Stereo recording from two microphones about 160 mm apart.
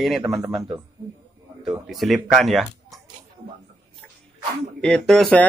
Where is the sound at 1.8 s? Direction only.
Centre (ahead or behind).